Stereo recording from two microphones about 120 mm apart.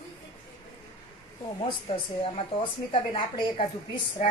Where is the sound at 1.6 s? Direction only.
50° left (ahead or behind).